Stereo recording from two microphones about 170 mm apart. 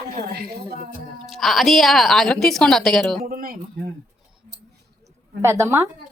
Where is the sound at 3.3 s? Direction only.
55° right (ahead or behind).